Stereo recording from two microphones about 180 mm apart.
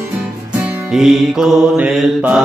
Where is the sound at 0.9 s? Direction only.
Centre (ahead or behind).